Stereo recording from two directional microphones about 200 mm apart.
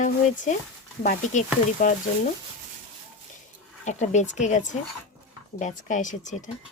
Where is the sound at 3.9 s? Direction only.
35° left (ahead or behind).